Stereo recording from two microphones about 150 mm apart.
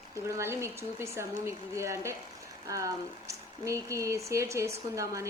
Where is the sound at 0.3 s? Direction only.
20° right (ahead or behind).